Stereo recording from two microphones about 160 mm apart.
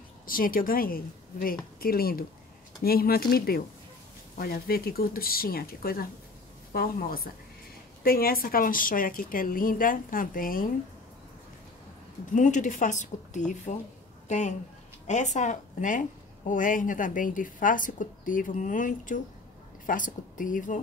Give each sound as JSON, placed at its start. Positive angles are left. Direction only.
{"t": 0.3, "sound": "a woman's voice", "side_deg": 60}
{"t": 12.3, "sound": "a woman's voice", "side_deg": 50}